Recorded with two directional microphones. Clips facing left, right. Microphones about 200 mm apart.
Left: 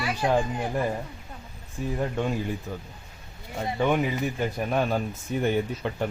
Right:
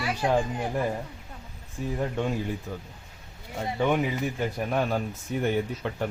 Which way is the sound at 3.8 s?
10° left (ahead or behind).